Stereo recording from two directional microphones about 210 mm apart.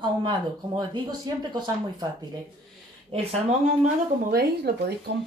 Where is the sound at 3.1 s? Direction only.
30° right (ahead or behind).